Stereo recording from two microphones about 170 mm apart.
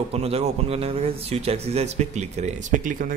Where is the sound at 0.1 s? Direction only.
35° right (ahead or behind).